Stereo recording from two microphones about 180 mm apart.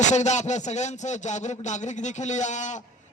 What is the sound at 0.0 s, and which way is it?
Speech, 40° left (ahead or behind).